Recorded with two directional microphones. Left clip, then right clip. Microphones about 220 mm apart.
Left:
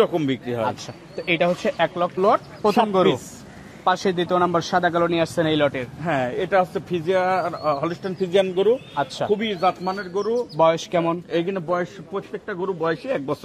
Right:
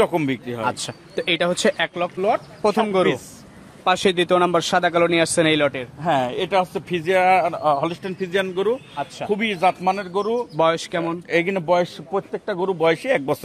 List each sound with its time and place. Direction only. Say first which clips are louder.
0.0 s a man's voice: right 1 dB; 35° right (ahead or behind)
0.5 s a man's voice: even; 10° right (ahead or behind)
2.9 s speech: even; centre (ahead or behind)
3.8 s speech: right 2 dB; 20° right (ahead or behind); by 5.9 s 5° right (ahead or behind)
6.0 s a man's voice: right 3 dB; 25° right (ahead or behind)
8.2 s speech: left 3 dB; 10° right (ahead or behind)
8.9 s speech: left 4 dB; 20° left (ahead or behind)
9.3 s speech: right 4 dB; 45° right (ahead or behind)
10.6 s a man's voice: left 1 dB; 20° right (ahead or behind)
10.9 s speech: left 3 dB; 10° left (ahead or behind)
11.2 s a man's voice: right 4 dB; 40° right (ahead or behind)